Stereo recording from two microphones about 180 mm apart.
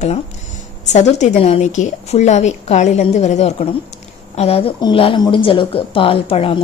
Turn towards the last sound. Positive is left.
turn(degrees=30)  # may be behind; listen again after turning